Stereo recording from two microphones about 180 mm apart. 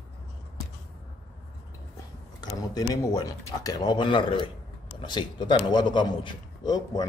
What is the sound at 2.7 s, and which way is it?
A man's voice, 20° left (ahead or behind).